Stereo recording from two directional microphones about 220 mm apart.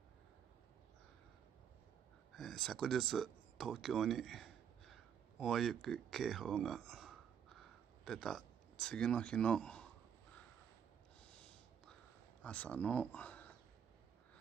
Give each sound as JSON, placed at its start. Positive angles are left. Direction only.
{"t": 2.3, "sound": "speech", "side_deg": 0}
{"t": 11.1, "sound": "snort", "side_deg": 5}
{"t": 12.4, "sound": "speech", "side_deg": 5}